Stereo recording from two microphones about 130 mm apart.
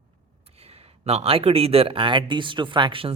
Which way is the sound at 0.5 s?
50° right (ahead or behind).